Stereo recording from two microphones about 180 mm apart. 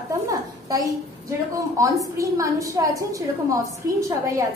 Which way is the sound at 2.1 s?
20° right (ahead or behind).